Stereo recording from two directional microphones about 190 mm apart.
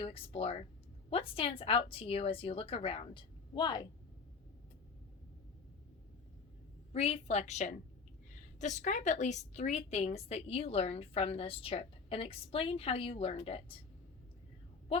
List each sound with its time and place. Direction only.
0.0 s a woman's voice: 30° left (ahead or behind)
6.9 s a woman's voice: 35° left (ahead or behind)